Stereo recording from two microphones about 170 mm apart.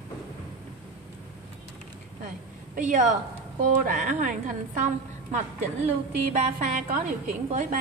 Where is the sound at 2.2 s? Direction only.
50° right (ahead or behind).